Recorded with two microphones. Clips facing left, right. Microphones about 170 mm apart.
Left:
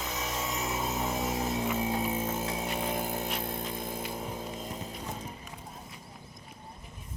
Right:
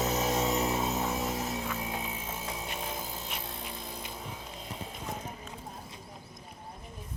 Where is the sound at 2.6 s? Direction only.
60° left (ahead or behind).